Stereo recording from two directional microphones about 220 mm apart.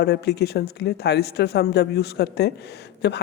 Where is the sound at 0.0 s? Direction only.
50° left (ahead or behind).